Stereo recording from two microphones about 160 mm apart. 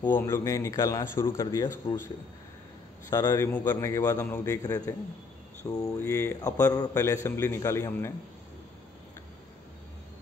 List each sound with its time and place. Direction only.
0.0 s a man's voice: 15° left (ahead or behind)
3.1 s a man's voice: 20° left (ahead or behind)